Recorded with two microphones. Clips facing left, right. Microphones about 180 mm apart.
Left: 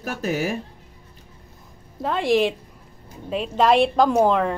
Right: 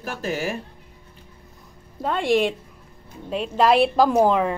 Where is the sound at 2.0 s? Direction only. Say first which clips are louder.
Left 1 dB; centre (ahead or behind).